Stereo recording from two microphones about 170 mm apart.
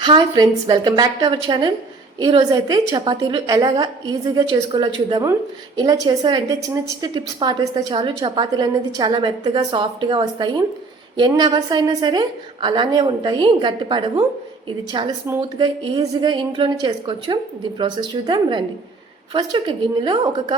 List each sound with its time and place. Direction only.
0.0 s a woman's voice: 25° right (ahead or behind)
15.3 s a woman's voice: 25° right (ahead or behind)